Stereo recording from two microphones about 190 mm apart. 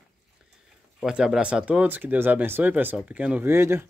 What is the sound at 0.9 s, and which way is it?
Speech, 5° right (ahead or behind).